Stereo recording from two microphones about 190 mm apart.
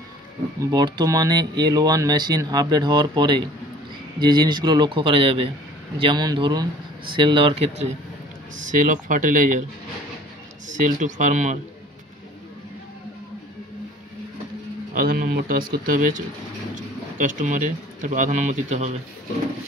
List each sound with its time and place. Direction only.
0.6 s speech: 20° right (ahead or behind)
8.7 s speech: 45° right (ahead or behind)
10.8 s speech: 40° right (ahead or behind)
15.0 s speech: 50° right (ahead or behind)